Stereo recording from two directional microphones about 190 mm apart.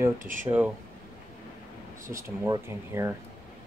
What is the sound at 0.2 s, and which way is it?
Speech, 45° right (ahead or behind).